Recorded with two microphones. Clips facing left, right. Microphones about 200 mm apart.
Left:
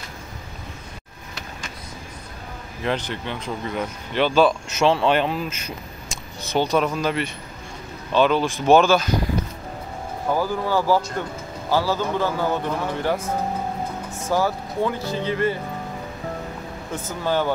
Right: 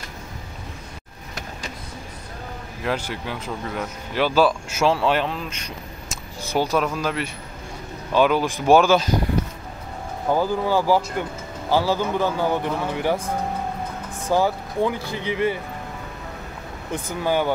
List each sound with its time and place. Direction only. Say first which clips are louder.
2.8 s speech: left 1 dB; 5° right (ahead or behind)
6.5 s speech: left 1 dB; 5° right (ahead or behind)
10.3 s speech: right 2 dB; 15° right (ahead or behind)
14.3 s speech: right 2 dB; 15° right (ahead or behind)
16.9 s speech: right 1 dB; 15° right (ahead or behind)